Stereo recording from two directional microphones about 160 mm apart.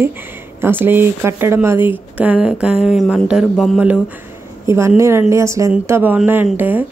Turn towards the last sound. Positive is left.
turn(degrees=-10)  # may be behind; listen again after turning